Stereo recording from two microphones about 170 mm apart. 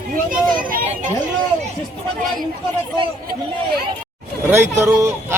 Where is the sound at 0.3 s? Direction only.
55° right (ahead or behind).